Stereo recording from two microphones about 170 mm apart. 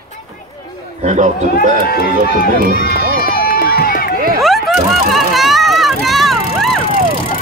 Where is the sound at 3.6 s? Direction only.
60° left (ahead or behind).